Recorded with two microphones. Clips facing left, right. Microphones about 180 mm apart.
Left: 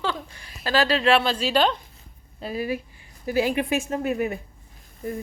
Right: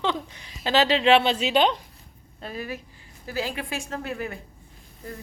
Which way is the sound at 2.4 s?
10° left (ahead or behind).